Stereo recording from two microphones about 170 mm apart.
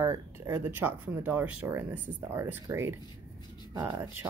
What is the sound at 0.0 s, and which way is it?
Speech, 15° right (ahead or behind).